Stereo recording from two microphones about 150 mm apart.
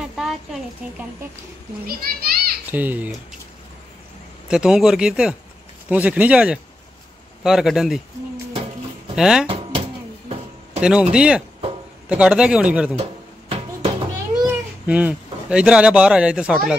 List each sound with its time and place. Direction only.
0.0 s speech: centre (ahead or behind)
1.9 s a child's voice: 85° right
2.7 s speech: 10° right (ahead or behind)
4.5 s speech: 5° right (ahead or behind)
9.1 s speech: 5° right (ahead or behind)
10.8 s speech: 5° right (ahead or behind)
12.9 s music: 40° right (ahead or behind)
14.9 s speech: 10° right (ahead or behind)